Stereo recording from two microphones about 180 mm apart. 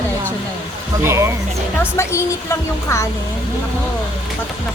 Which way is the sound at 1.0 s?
15° right (ahead or behind).